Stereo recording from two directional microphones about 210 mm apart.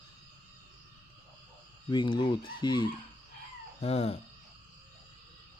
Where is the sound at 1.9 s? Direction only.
20° left (ahead or behind).